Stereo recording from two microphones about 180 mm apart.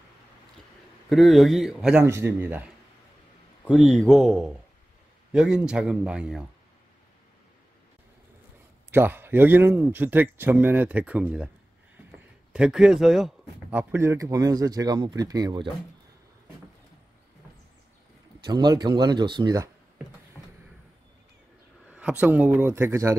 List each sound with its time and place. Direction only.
1.1 s speech: centre (ahead or behind)
2.0 s speech: 15° right (ahead or behind)
3.6 s speech: centre (ahead or behind)
8.9 s speech: 10° right (ahead or behind)
12.5 s speech: 5° right (ahead or behind); by 15.7 s 25° right (ahead or behind)
18.4 s speech: 25° right (ahead or behind)
21.8 s speech: 10° right (ahead or behind)